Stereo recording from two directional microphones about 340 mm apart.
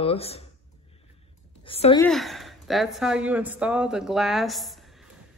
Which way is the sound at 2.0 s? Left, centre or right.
Centre.